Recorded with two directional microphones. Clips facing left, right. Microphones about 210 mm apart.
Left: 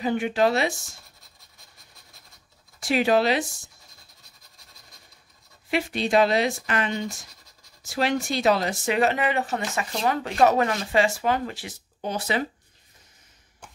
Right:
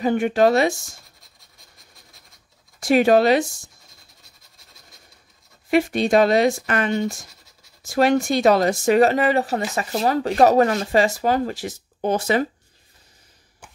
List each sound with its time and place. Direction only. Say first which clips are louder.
0.0 s speech: right 5 dB; 45° right (ahead or behind)
2.8 s speech: right 6 dB; 45° right (ahead or behind)
5.7 s speech: right 6 dB; 45° right (ahead or behind)